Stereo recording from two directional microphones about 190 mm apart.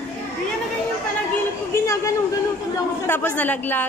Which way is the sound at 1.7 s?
15° left (ahead or behind).